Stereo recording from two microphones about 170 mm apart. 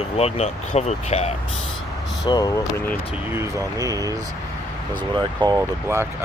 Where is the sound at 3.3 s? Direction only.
20° right (ahead or behind).